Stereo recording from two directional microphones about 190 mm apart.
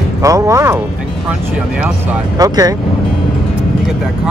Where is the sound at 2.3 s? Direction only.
20° right (ahead or behind).